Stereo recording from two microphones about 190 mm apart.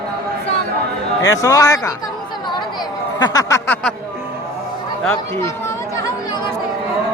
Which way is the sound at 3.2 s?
20° left (ahead or behind).